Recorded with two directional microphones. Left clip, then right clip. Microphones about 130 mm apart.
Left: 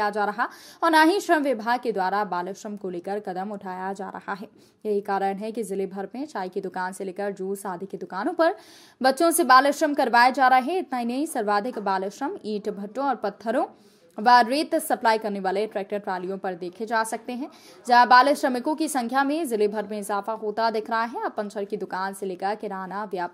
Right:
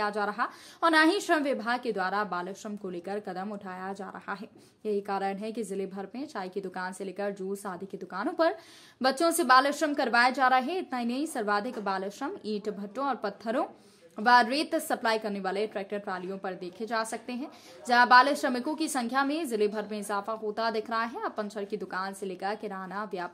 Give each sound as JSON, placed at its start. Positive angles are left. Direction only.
{"t": 0.0, "sound": "a woman's voice", "side_deg": 30}